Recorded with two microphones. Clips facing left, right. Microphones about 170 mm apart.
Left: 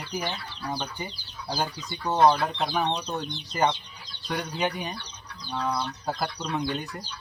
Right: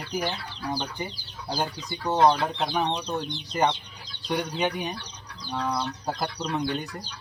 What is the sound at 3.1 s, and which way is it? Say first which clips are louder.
Speech: right 2 dB; 10° right (ahead or behind).